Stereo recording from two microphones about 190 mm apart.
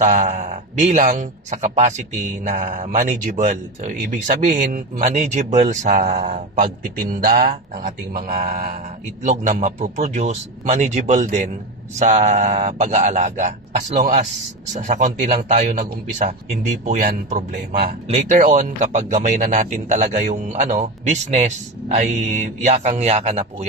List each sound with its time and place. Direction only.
0.0 s a man's voice: 40° right (ahead or behind)